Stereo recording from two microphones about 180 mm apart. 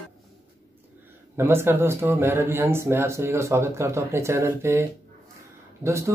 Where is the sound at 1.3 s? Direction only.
15° right (ahead or behind).